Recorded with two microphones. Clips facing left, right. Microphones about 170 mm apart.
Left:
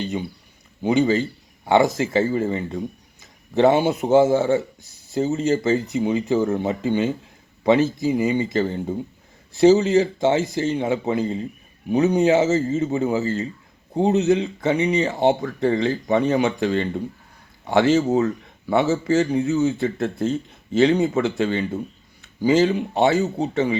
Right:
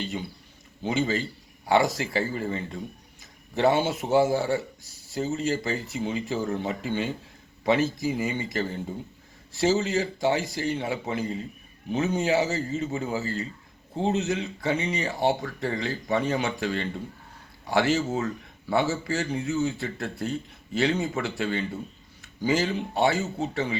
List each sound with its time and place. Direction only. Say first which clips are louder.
0.0 s a man's voice: left 6 dB; 20° left (ahead or behind)